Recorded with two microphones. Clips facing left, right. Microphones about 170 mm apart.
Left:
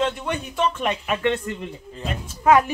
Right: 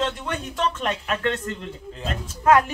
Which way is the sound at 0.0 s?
10° left (ahead or behind).